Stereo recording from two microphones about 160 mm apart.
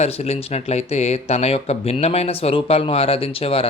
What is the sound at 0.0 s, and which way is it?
Speech, 40° left (ahead or behind).